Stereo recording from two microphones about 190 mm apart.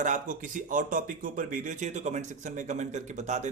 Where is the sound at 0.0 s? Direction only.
45° right (ahead or behind).